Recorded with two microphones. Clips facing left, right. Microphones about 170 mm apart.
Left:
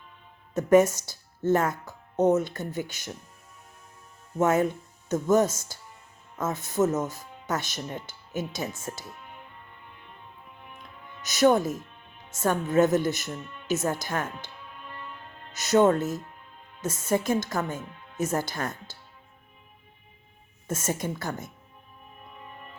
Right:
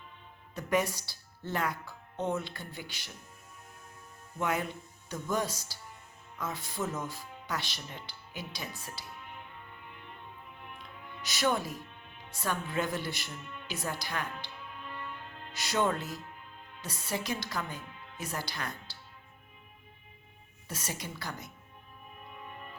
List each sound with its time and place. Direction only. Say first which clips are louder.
0.5 s speech: left 11 dB; 45° left (ahead or behind)
4.4 s speech: left 10 dB; 45° left (ahead or behind)
11.3 s speech: left 10 dB; 45° left (ahead or behind)
15.5 s speech: left 10 dB; 45° left (ahead or behind)
20.7 s speech: left 10 dB; 50° left (ahead or behind)